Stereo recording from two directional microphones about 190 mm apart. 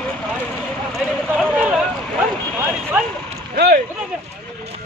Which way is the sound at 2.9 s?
10° right (ahead or behind).